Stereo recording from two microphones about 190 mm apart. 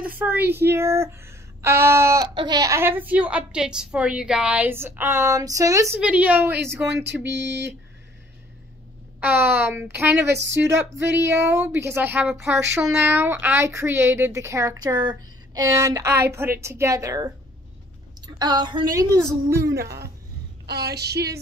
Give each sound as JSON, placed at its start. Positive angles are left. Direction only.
{"t": 0.2, "sound": "speech", "side_deg": -10}
{"t": 5.9, "sound": "speech", "side_deg": -5}
{"t": 9.2, "sound": "speech", "side_deg": -10}
{"t": 10.3, "sound": "speech", "side_deg": -70}
{"t": 11.5, "sound": "a woman's voice", "side_deg": -10}
{"t": 19.7, "sound": "a woman's voice", "side_deg": -55}